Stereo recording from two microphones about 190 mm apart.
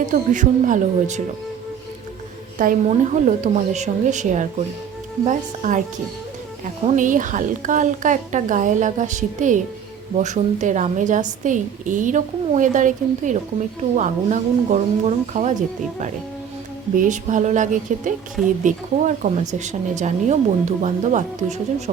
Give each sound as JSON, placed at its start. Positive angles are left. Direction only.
{"t": 0.0, "sound": "a woman's voice", "side_deg": -40}
{"t": 2.6, "sound": "a woman's voice", "side_deg": -40}
{"t": 6.8, "sound": "a woman's voice", "side_deg": -45}
{"t": 17.0, "sound": "a woman's voice", "side_deg": -40}